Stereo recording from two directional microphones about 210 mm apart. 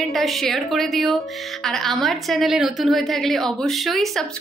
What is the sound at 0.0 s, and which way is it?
A woman's voice, centre (ahead or behind).